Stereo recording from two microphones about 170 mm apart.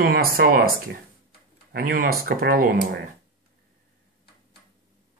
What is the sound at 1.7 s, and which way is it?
Speech, 55° right (ahead or behind).